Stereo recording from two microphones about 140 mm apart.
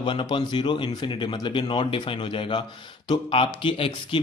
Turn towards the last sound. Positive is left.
turn(degrees=40)  # may be behind; listen again after turning